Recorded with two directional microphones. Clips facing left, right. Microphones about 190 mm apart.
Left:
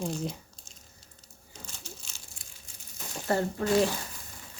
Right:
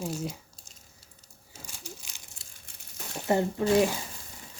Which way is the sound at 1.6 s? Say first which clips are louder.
Right 3 dB; 15° right (ahead or behind).